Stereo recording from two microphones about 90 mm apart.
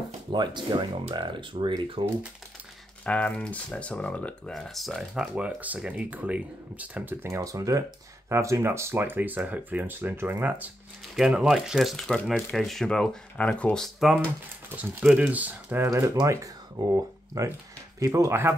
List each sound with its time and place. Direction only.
0.3 s speech: 60° right (ahead or behind)
1.8 s speech: 75° right (ahead or behind)
3.1 s speech: 15° left (ahead or behind)
5.3 s speech: 15° right (ahead or behind)
7.2 s speech: 35° right (ahead or behind)
11.1 s speech: 5° right (ahead or behind); by 13.8 s 10° left (ahead or behind)
14.8 s speech: 20° right (ahead or behind)
15.9 s speech: 35° right (ahead or behind)